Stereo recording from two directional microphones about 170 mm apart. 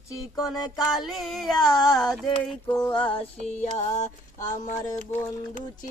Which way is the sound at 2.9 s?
30° left (ahead or behind).